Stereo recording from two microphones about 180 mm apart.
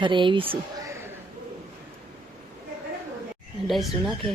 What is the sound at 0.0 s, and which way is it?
Speech, 25° right (ahead or behind).